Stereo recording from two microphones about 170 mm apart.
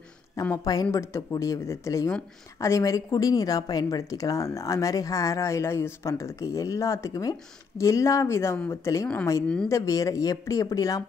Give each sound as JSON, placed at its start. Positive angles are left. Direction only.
{"t": 0.4, "sound": "a woman's voice", "side_deg": 20}